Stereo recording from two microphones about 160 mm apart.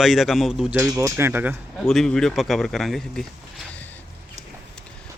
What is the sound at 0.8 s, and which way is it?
Speech, 20° right (ahead or behind).